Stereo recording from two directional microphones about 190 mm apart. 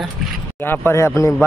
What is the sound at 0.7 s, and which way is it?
Speech, 10° left (ahead or behind).